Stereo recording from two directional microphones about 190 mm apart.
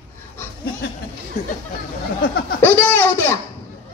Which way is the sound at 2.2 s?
50° left (ahead or behind).